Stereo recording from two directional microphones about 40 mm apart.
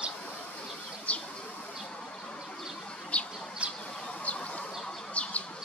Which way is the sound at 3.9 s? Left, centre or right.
Left.